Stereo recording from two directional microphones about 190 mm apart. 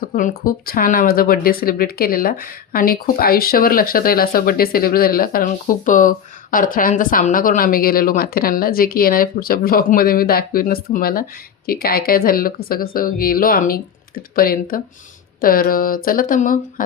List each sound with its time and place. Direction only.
0.0 s speech: 45° left (ahead or behind)